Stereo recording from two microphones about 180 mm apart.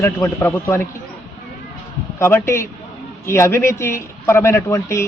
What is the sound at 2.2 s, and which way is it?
Speech, 15° left (ahead or behind).